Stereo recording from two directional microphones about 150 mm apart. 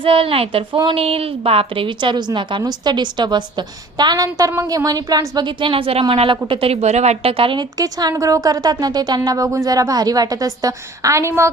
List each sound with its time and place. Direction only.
0.0 s a woman's voice: 35° right (ahead or behind)
7.8 s a woman's voice: 25° right (ahead or behind)